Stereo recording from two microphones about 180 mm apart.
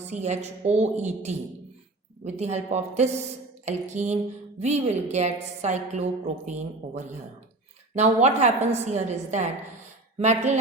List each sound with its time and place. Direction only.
0.1 s a woman's voice: 40° right (ahead or behind)
7.9 s a woman's voice: 40° right (ahead or behind)